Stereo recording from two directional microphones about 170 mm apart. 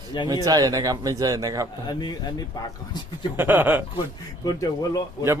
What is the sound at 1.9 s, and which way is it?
Speech, 25° left (ahead or behind).